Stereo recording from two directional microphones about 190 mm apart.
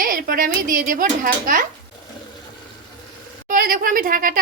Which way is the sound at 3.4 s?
50° right (ahead or behind).